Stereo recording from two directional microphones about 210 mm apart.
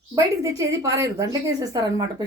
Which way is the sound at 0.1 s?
15° right (ahead or behind).